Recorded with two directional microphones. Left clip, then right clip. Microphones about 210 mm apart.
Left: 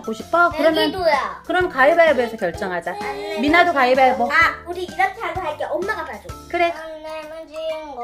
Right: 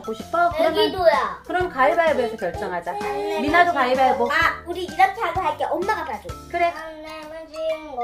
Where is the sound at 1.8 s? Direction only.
50° left (ahead or behind).